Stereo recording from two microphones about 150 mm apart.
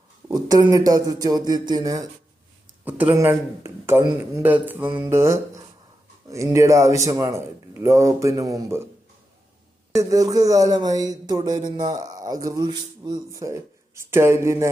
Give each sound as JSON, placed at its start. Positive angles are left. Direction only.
{"t": 0.3, "sound": "speech", "side_deg": -25}
{"t": 2.8, "sound": "a man's voice", "side_deg": -10}
{"t": 10.0, "sound": "speech", "side_deg": -25}